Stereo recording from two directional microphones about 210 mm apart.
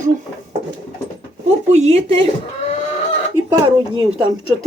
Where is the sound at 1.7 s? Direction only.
30° right (ahead or behind).